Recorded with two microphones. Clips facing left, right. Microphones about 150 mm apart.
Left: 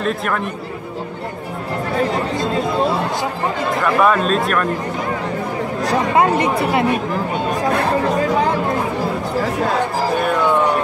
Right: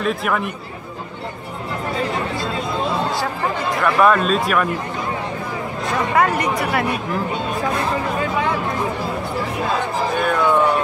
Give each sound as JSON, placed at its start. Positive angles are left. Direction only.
{"t": 0.0, "sound": "speech", "side_deg": 0}
{"t": 3.8, "sound": "speech", "side_deg": 0}
{"t": 6.1, "sound": "speech", "side_deg": 25}
{"t": 8.2, "sound": "speech", "side_deg": 40}